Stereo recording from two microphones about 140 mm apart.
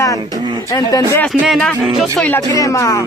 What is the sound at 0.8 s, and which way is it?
Speech, 25° left (ahead or behind).